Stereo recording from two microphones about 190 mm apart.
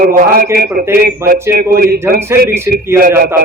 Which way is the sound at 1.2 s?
15° right (ahead or behind).